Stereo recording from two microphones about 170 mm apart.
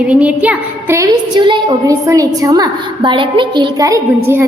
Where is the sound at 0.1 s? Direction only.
5° right (ahead or behind).